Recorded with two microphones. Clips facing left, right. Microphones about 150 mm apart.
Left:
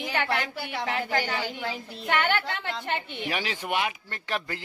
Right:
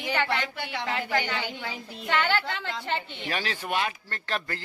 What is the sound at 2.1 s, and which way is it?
A woman's voice, 55° left (ahead or behind).